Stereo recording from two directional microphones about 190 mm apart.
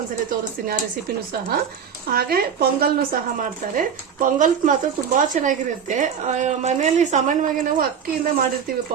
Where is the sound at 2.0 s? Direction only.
55° right (ahead or behind).